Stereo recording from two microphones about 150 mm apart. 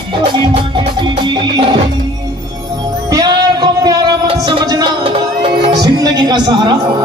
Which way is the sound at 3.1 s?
30° right (ahead or behind).